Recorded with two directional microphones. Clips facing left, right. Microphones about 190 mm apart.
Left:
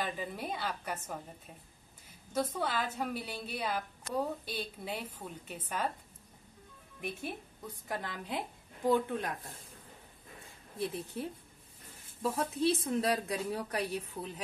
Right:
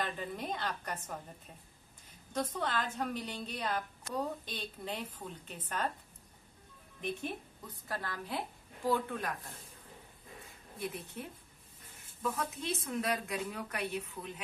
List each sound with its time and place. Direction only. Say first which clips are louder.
0.0 s a woman's voice: left 1 dB; 5° left (ahead or behind)
2.3 s a woman's voice: left 2 dB; 10° left (ahead or behind)
7.0 s a woman's voice: right 1 dB; 10° left (ahead or behind)
10.8 s speech: left 4 dB; 30° left (ahead or behind)